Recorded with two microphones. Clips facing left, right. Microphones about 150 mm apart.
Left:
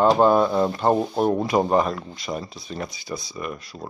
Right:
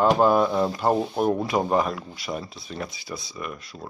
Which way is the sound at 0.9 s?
15° left (ahead or behind).